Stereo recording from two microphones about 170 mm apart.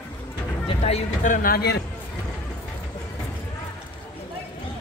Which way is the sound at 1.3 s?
60° left (ahead or behind).